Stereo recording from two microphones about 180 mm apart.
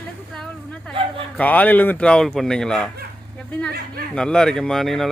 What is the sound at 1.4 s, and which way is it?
Speech, 10° left (ahead or behind).